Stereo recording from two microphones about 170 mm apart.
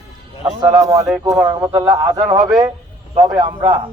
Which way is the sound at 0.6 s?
20° right (ahead or behind).